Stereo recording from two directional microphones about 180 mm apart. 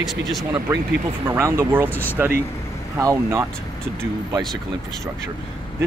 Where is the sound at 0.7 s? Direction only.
15° right (ahead or behind).